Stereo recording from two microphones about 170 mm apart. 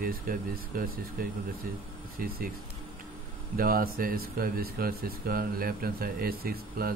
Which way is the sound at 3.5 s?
60° right (ahead or behind).